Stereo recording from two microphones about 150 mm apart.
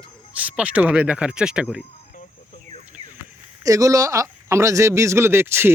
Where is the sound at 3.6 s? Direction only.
20° right (ahead or behind).